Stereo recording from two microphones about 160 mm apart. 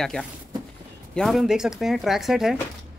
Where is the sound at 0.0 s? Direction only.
5° left (ahead or behind).